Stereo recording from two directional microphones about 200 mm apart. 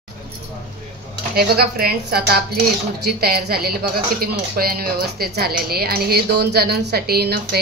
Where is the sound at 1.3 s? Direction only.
50° right (ahead or behind).